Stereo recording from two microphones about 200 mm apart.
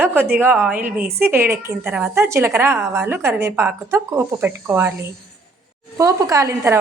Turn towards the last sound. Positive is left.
turn(degrees=-15)  # may be behind; listen again after turning